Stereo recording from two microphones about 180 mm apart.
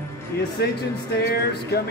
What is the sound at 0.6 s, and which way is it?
Speech, 65° left (ahead or behind).